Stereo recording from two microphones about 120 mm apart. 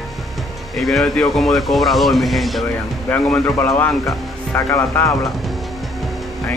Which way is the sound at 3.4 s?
25° left (ahead or behind).